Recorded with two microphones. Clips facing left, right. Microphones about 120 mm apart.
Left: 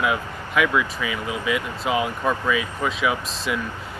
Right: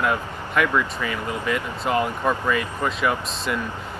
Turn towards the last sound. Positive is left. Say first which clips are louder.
# even
turn(degrees=5)  # may be behind; listen again after turning